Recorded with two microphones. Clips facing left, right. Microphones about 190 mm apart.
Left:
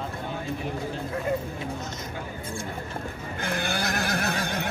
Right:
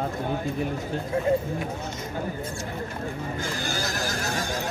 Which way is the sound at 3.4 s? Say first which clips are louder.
Left 5 dB; 60° left (ahead or behind).